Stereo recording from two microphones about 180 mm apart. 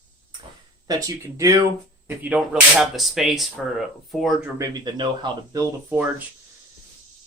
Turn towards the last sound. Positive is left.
turn(degrees=-10)  # may be behind; listen again after turning